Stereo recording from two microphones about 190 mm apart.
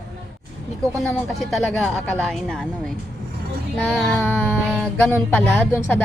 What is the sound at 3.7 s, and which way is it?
Female singing, 5° left (ahead or behind).